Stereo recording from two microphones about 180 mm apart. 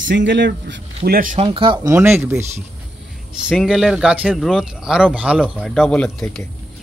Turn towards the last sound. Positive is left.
turn(degrees=5)  # may be behind; listen again after turning